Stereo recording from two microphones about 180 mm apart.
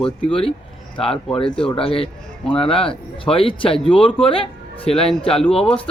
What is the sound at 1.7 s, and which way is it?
Speech, 30° left (ahead or behind).